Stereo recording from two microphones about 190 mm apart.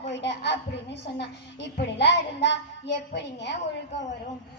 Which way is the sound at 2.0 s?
65° left (ahead or behind).